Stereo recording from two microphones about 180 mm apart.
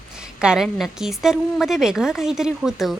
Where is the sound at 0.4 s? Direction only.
5° right (ahead or behind).